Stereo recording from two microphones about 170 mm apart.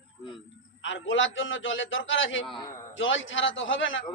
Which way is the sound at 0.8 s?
90° left.